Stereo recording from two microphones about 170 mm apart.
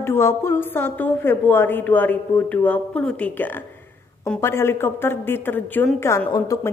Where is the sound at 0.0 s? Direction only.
15° left (ahead or behind).